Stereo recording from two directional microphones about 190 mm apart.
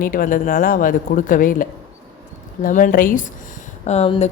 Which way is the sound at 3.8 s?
35° left (ahead or behind).